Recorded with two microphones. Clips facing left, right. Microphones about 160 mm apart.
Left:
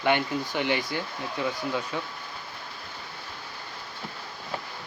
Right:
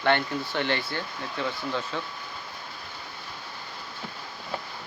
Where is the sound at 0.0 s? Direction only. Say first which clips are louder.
Even; 10° left (ahead or behind).